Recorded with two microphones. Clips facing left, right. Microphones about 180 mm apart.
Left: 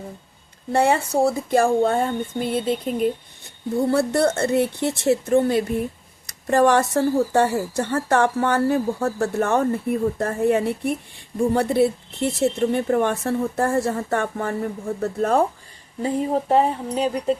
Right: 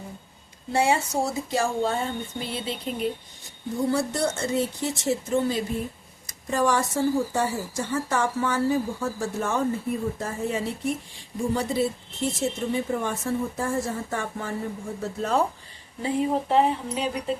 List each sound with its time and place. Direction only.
0.7 s speech: 55° left (ahead or behind)
16.0 s speech: 40° left (ahead or behind)